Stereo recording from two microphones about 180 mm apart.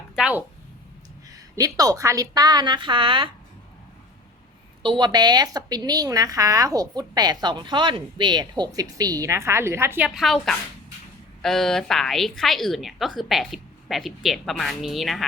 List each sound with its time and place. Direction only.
0.2 s a sound: 5° right (ahead or behind)
1.3 s a woman's voice: 20° right (ahead or behind)
4.8 s a woman's voice: 25° right (ahead or behind)
10.2 s a woman's voice: centre (ahead or behind)